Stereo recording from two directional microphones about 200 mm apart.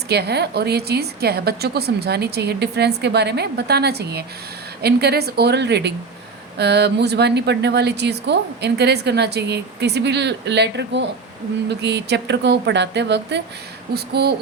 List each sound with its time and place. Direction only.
0.1 s a woman's voice: 55° right (ahead or behind)